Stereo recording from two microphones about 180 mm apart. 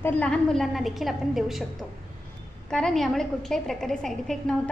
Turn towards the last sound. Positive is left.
turn(degrees=5)  # may be behind; listen again after turning